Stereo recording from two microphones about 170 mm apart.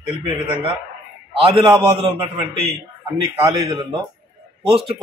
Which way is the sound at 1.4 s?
30° right (ahead or behind).